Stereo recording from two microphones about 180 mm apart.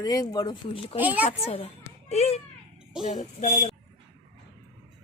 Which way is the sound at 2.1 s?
35° left (ahead or behind).